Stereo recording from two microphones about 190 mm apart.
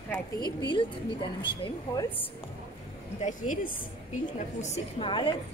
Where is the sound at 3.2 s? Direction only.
45° left (ahead or behind).